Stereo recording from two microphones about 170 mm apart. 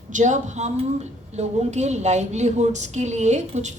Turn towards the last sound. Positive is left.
turn(degrees=-45)  # may be behind; listen again after turning